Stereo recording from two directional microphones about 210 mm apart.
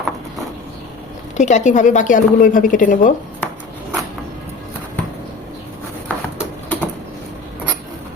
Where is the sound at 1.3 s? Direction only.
35° left (ahead or behind).